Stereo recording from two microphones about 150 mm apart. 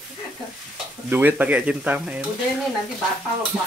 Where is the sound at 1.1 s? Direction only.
10° right (ahead or behind).